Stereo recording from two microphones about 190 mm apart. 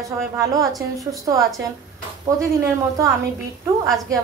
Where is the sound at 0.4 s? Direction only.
15° right (ahead or behind).